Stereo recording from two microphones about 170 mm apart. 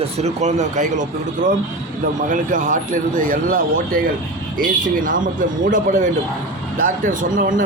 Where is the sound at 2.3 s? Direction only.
50° right (ahead or behind).